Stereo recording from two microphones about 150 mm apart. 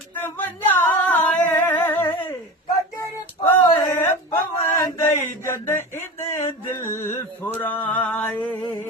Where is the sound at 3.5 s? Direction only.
15° left (ahead or behind).